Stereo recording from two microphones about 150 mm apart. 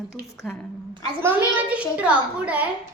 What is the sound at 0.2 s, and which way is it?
Speech, 90° right.